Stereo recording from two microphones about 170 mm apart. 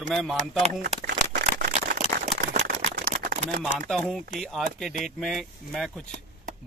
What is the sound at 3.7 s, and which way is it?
Speech, 5° left (ahead or behind).